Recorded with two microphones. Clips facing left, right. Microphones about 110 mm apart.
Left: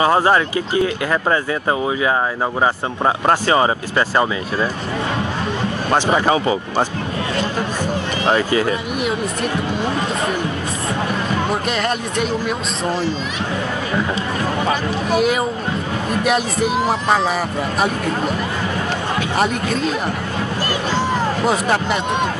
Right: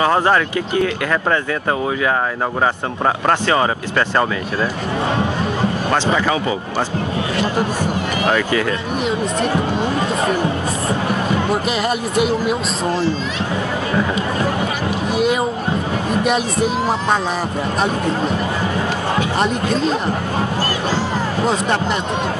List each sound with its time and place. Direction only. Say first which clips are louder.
0.0 s speech: left 1 dB; 15° left (ahead or behind)
3.3 s speech: left 1 dB; 20° left (ahead or behind)
6.1 s speech: left 2 dB; 30° left (ahead or behind)
8.3 s speech: left 2 dB; 25° left (ahead or behind)
11.7 s speech: right 2 dB; 5° right (ahead or behind)
15.1 s speech: even; centre (ahead or behind)